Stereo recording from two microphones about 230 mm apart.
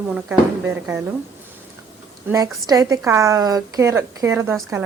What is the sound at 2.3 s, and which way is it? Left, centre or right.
A woman's voice, centre.